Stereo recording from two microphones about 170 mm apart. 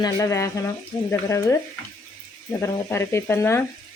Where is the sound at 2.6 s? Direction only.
15° left (ahead or behind).